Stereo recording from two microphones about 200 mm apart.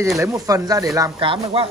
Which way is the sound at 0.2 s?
15° right (ahead or behind).